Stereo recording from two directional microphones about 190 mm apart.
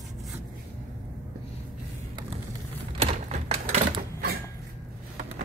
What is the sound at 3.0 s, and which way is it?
Typewriter, 35° right (ahead or behind).